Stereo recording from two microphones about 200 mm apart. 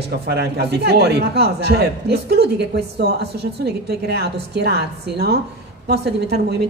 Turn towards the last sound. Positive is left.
turn(degrees=-55)  # may be behind; listen again after turning